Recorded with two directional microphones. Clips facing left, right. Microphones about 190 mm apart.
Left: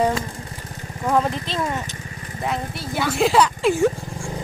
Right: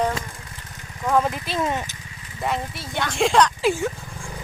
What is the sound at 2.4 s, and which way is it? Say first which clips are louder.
Speech: even; centre (ahead or behind).